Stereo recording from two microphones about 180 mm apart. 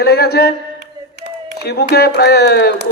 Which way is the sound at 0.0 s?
60° left (ahead or behind).